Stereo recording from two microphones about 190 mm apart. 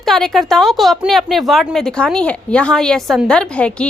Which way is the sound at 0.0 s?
Centre (ahead or behind).